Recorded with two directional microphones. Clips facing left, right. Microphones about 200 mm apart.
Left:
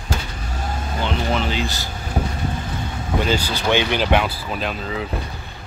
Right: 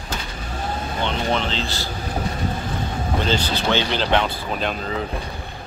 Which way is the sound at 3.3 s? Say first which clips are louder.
Left 1 dB; 10° left (ahead or behind).